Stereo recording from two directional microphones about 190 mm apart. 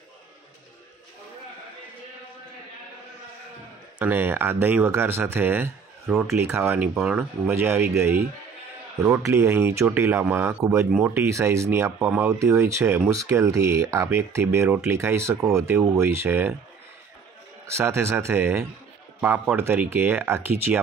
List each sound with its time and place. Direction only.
4.0 s speech: 10° right (ahead or behind)
17.6 s speech: 15° right (ahead or behind)